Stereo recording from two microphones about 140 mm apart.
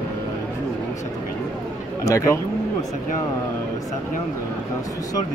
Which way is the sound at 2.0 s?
25° left (ahead or behind).